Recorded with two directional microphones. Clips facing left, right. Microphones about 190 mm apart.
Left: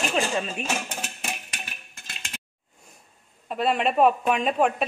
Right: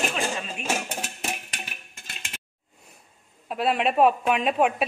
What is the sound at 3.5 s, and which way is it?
A woman's voice, centre (ahead or behind).